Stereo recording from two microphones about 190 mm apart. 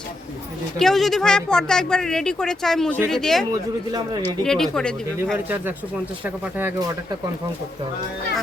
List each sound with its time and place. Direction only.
0.8 s speech: centre (ahead or behind)
3.5 s speech: 20° right (ahead or behind)
4.4 s speech: centre (ahead or behind)
6.2 s speech: 10° right (ahead or behind)